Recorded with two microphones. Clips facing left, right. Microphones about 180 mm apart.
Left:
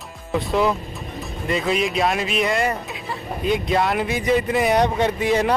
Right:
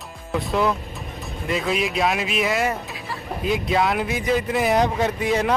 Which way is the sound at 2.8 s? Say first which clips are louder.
Left 2 dB; 20° left (ahead or behind).